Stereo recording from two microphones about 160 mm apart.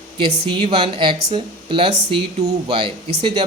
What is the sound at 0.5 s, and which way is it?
Speech, 35° right (ahead or behind).